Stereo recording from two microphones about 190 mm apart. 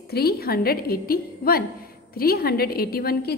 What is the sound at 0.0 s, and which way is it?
A woman's voice, 55° left (ahead or behind).